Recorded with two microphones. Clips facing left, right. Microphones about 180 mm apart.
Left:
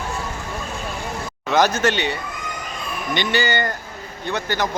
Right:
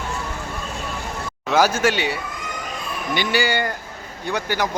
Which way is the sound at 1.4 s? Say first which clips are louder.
Even; 5° right (ahead or behind).